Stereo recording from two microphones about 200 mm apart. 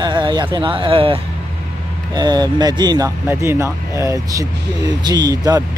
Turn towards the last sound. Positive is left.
turn(degrees=-20)  # may be behind; listen again after turning